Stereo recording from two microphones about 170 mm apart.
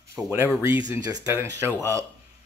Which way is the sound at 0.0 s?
15° right (ahead or behind).